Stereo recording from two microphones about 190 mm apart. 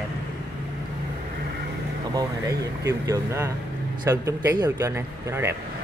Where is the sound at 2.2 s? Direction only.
15° right (ahead or behind).